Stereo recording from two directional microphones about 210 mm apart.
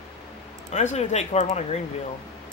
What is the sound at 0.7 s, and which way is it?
Speech, 35° left (ahead or behind).